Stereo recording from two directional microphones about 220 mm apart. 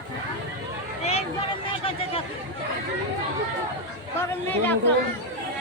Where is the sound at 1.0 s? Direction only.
30° left (ahead or behind).